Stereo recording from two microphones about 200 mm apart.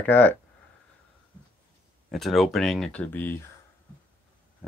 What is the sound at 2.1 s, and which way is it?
Speech, centre (ahead or behind).